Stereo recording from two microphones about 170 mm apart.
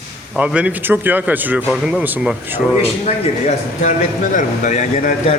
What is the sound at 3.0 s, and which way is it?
Speech, 45° left (ahead or behind).